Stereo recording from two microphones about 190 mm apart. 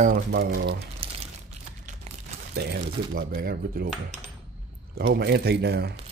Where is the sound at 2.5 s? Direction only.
60° right (ahead or behind).